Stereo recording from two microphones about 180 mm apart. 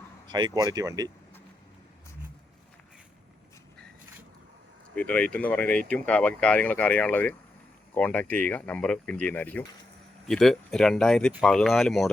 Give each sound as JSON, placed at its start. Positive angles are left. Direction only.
{"t": 0.3, "sound": "speech", "side_deg": -25}
{"t": 4.9, "sound": "speech", "side_deg": 5}